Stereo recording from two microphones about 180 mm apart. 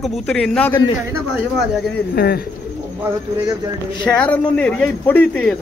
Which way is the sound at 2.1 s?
60° left (ahead or behind).